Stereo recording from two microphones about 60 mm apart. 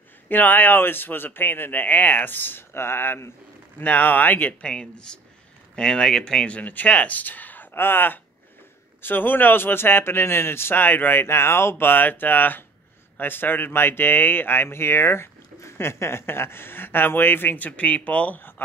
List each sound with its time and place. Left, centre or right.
0.3 s speech: left
3.8 s speech: left
4.6 s speech: centre
6.5 s speech: left
11.8 s speech: left